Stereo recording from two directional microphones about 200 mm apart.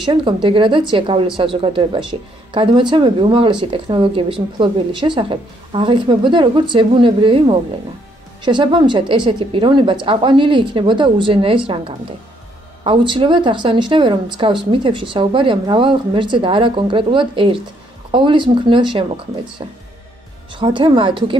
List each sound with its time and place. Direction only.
0.0 s speech: 25° right (ahead or behind)
12.8 s speech: 25° right (ahead or behind)